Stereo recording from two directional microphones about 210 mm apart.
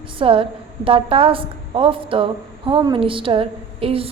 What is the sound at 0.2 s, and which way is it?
A woman's voice, 25° right (ahead or behind).